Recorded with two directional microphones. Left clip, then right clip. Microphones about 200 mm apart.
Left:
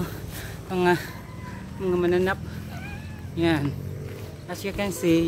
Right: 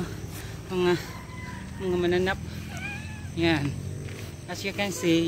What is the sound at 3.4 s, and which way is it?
Speech, 30° left (ahead or behind).